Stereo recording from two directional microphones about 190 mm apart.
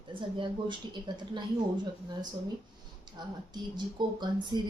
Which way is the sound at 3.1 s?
20° right (ahead or behind).